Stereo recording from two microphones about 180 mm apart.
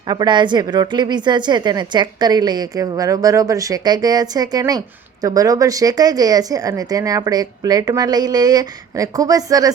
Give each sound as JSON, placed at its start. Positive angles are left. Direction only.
{"t": 0.1, "sound": "a woman's voice", "side_deg": -25}